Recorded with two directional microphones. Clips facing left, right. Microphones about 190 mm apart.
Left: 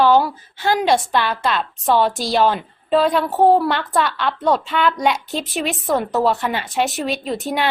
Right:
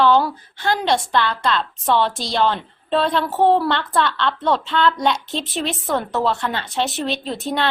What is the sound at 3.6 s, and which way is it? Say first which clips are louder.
Speech: left 1 dB; 15° left (ahead or behind).